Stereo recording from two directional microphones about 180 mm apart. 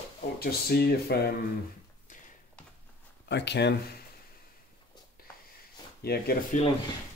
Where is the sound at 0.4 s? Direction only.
60° left (ahead or behind).